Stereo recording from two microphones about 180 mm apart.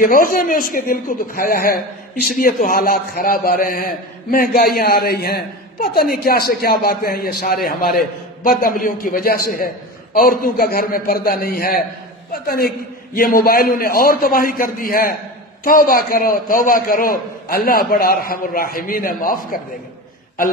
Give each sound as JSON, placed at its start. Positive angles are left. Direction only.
{"t": 0.0, "sound": "a man's voice", "side_deg": 50}